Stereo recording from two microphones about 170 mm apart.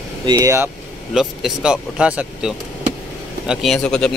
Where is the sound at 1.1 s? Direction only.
5° right (ahead or behind).